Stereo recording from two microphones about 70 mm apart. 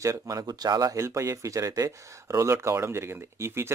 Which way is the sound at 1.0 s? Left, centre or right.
Right.